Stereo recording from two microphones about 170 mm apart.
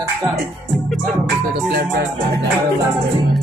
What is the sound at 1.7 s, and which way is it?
Music, 70° right (ahead or behind).